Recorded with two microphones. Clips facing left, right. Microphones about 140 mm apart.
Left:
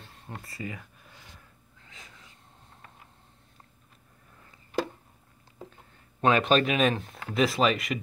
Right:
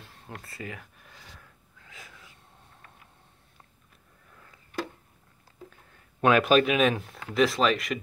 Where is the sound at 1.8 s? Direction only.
5° right (ahead or behind).